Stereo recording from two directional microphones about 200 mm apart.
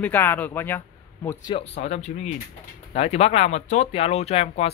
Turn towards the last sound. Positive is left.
turn(degrees=30)  # may be behind; listen again after turning